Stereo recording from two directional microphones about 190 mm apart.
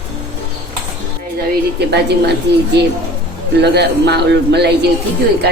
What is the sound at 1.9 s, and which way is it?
Speech, 60° right (ahead or behind).